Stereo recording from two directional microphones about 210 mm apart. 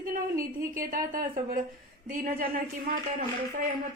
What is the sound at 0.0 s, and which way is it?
Speech, 40° right (ahead or behind).